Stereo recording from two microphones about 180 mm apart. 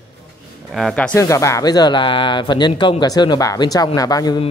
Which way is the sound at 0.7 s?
Centre (ahead or behind).